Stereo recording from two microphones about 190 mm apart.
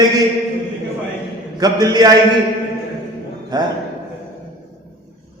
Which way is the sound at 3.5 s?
20° right (ahead or behind).